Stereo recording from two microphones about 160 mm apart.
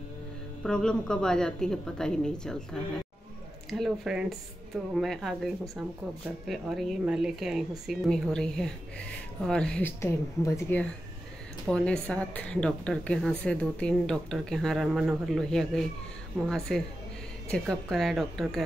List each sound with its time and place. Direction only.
0.7 s a woman's voice: 5° left (ahead or behind)